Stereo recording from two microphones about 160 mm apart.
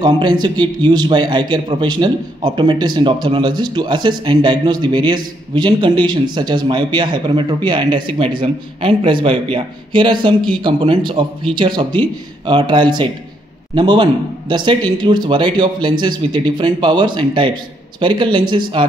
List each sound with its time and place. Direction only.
0.0 s a man's voice: 30° right (ahead or behind)